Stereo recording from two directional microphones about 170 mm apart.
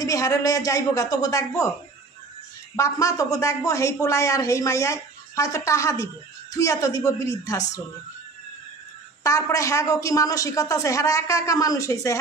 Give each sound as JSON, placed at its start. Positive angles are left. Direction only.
{"t": 0.0, "sound": "a man's voice", "side_deg": 20}
{"t": 2.7, "sound": "a man's voice", "side_deg": 20}
{"t": 9.2, "sound": "a man's voice", "side_deg": 20}